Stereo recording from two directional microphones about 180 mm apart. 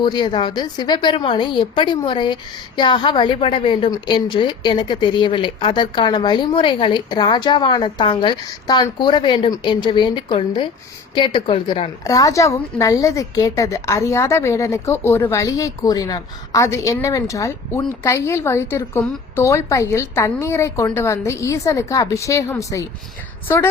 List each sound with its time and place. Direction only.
0.0 s a woman's voice: 25° left (ahead or behind)